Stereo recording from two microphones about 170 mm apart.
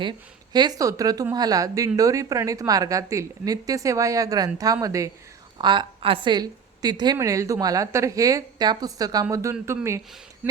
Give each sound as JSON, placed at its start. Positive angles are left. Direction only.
{"t": 0.5, "sound": "a woman's voice", "side_deg": -25}